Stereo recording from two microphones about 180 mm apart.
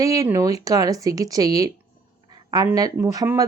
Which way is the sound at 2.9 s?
20° right (ahead or behind).